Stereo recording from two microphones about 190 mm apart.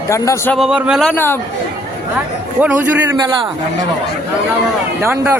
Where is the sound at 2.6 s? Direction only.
10° right (ahead or behind).